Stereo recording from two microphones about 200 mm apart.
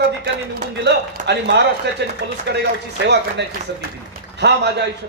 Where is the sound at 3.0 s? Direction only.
55° right (ahead or behind).